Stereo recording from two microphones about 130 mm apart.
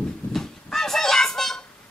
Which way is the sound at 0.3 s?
5° left (ahead or behind).